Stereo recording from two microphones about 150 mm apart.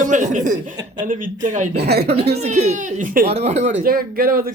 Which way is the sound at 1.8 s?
90° right.